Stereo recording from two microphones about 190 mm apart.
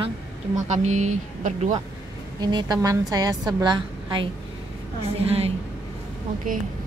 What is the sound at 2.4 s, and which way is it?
A woman's voice, 20° right (ahead or behind).